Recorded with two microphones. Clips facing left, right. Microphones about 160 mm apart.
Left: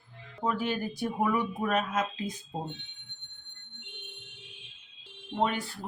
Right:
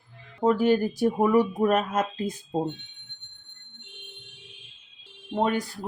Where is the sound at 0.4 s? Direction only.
45° right (ahead or behind).